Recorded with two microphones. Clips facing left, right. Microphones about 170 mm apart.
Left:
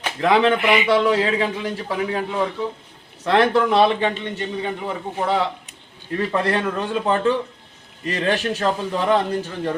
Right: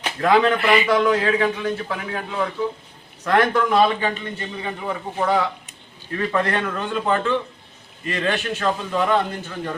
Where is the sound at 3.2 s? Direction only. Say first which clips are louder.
Left 2 dB; 25° left (ahead or behind).